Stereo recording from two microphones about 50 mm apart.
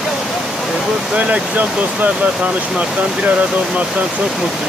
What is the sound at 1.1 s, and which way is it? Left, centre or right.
Speech, right.